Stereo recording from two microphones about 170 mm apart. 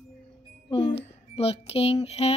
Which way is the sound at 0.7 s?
30° left (ahead or behind).